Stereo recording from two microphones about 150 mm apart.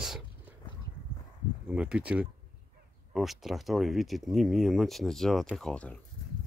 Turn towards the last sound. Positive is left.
turn(degrees=10)  # may be behind; listen again after turning